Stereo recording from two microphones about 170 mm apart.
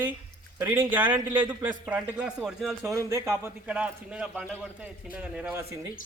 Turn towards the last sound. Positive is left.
turn(degrees=-15)  # may be behind; listen again after turning